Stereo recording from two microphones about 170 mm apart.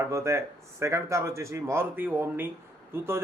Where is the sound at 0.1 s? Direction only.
15° right (ahead or behind).